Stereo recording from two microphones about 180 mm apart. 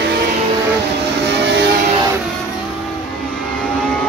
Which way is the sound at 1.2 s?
75° right (ahead or behind).